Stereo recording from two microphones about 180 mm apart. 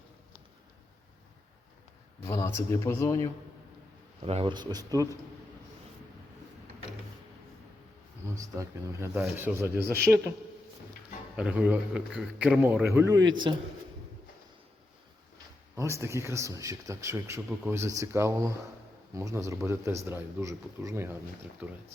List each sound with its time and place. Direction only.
2.2 s speech: 15° left (ahead or behind)
4.2 s speech: 30° right (ahead or behind)
8.4 s speech: 15° right (ahead or behind)
11.3 s speech: 5° right (ahead or behind)
13.5 s speech: 25° right (ahead or behind)
15.7 s speech: 15° right (ahead or behind)